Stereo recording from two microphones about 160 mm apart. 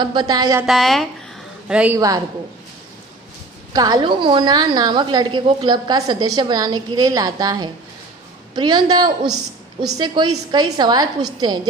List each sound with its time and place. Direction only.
0.0 s a woman's voice: 25° right (ahead or behind)
0.7 s a woman's voice: centre (ahead or behind)
2.0 s a woman's voice: 20° right (ahead or behind)
3.7 s a woman's voice: 25° right (ahead or behind)